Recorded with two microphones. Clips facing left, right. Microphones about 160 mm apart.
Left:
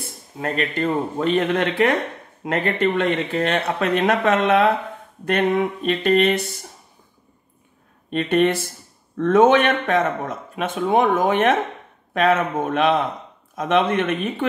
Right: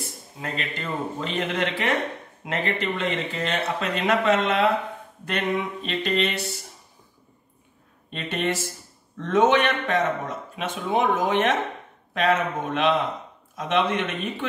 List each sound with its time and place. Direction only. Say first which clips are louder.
0.4 s speech: left 9 dB; 50° left (ahead or behind)
8.1 s speech: left 9 dB; 55° left (ahead or behind)